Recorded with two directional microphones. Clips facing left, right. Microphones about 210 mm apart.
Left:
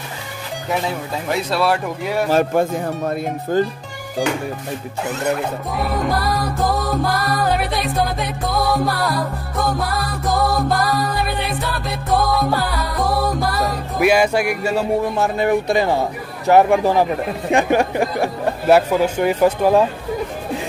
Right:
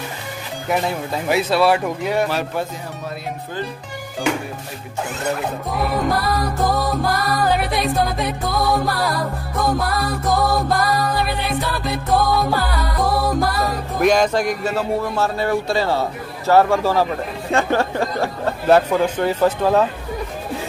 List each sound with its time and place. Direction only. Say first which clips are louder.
1.3 s music: right 3 dB; centre (ahead or behind)
2.2 s speech: left 6 dB; 45° left (ahead or behind)
5.3 s music: left 1 dB; centre (ahead or behind)
13.9 s a man's voice: left 1 dB; 10° left (ahead or behind)